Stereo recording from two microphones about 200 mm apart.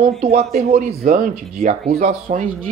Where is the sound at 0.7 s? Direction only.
50° right (ahead or behind).